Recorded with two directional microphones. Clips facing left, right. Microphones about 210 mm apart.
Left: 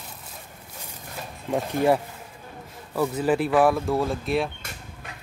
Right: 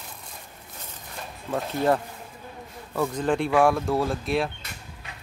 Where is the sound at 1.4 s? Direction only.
10° left (ahead or behind).